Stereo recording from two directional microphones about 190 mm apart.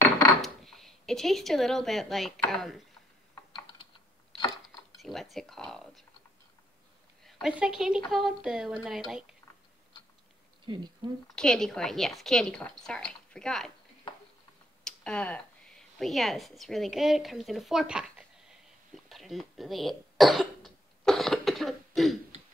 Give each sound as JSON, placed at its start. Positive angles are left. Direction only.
{"t": 0.4, "sound": "speech", "side_deg": 0}
{"t": 3.5, "sound": "typing", "side_deg": 25}
{"t": 5.0, "sound": "a woman's voice", "side_deg": 0}
{"t": 7.2, "sound": "a woman's voice", "side_deg": 0}
{"t": 10.6, "sound": "a sound", "side_deg": -25}
{"t": 11.3, "sound": "a woman's voice", "side_deg": 5}
{"t": 14.9, "sound": "speech", "side_deg": 5}
{"t": 19.0, "sound": "cough", "side_deg": 0}